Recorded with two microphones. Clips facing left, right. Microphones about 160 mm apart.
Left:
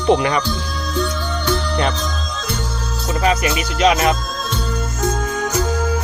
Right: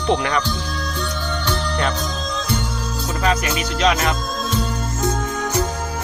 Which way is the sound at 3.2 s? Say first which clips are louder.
Left 2 dB; 5° left (ahead or behind).